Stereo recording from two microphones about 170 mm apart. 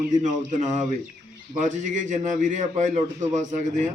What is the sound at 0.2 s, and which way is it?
A man's voice, 45° right (ahead or behind).